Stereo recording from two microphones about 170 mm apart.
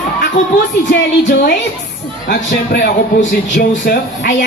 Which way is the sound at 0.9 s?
85° left.